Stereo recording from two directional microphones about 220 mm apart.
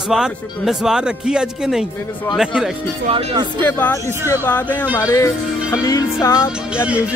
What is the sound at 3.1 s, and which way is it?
Speech, 25° right (ahead or behind).